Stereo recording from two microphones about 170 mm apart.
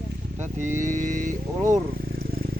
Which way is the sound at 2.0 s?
60° right (ahead or behind).